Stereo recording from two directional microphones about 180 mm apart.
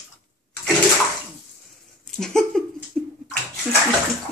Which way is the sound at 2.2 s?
5° left (ahead or behind).